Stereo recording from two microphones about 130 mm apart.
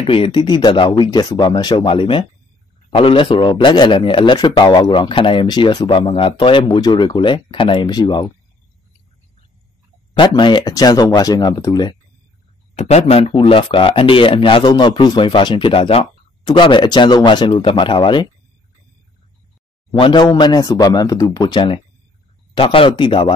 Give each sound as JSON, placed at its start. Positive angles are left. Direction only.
{"t": 0.0, "sound": "speech", "side_deg": 40}
{"t": 10.1, "sound": "speech", "side_deg": 40}
{"t": 12.7, "sound": "speech", "side_deg": 55}
{"t": 20.0, "sound": "speech", "side_deg": 35}